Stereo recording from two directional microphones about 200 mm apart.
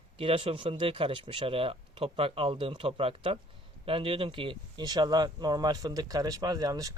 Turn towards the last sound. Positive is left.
turn(degrees=-20)  # may be behind; listen again after turning